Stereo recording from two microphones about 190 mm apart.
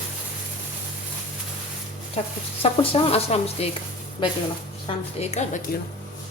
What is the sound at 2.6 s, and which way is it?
Speech, 30° left (ahead or behind).